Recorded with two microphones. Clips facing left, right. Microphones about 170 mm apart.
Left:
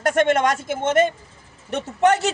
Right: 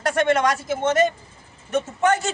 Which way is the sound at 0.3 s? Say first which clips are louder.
Left 1 dB; 50° left (ahead or behind).